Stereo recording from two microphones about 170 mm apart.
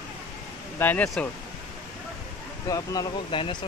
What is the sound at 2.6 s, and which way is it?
Speech, 20° left (ahead or behind).